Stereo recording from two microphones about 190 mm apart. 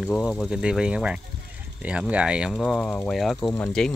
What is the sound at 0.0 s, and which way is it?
Speech, centre (ahead or behind).